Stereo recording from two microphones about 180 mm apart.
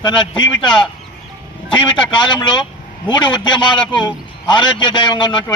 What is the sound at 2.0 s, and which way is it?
A man's voice, 25° left (ahead or behind).